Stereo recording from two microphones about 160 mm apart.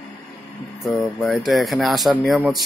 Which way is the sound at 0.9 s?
Centre (ahead or behind).